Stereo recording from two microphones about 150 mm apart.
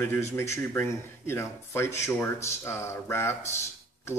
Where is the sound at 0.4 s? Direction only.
15° left (ahead or behind).